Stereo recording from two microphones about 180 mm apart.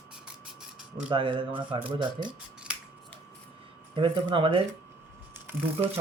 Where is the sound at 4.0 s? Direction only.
30° right (ahead or behind).